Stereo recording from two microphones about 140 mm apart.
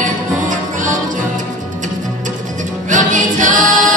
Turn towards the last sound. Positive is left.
turn(degrees=-65)  # may be behind; listen again after turning